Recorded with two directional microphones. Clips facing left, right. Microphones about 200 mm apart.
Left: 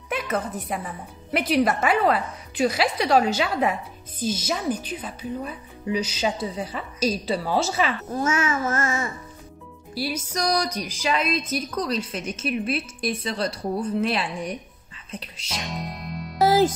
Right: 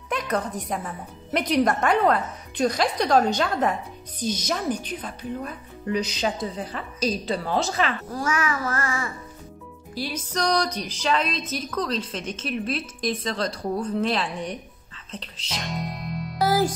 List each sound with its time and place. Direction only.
0.1 s a woman's voice: 5° left (ahead or behind)
8.1 s a child's voice: 25° left (ahead or behind)
9.9 s a woman's voice: 10° left (ahead or behind)
15.0 s music: 10° left (ahead or behind)
16.3 s music: 20° left (ahead or behind)